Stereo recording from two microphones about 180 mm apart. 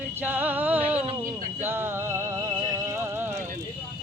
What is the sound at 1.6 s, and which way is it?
Music, 10° right (ahead or behind).